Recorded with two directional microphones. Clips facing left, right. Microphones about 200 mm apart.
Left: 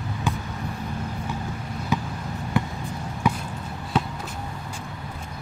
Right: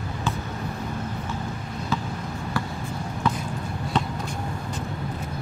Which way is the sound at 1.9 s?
15° left (ahead or behind).